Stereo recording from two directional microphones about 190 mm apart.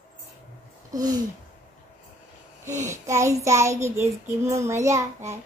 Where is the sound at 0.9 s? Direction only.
20° right (ahead or behind).